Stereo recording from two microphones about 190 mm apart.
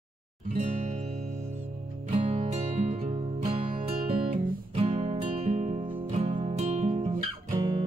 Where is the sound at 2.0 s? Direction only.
35° right (ahead or behind).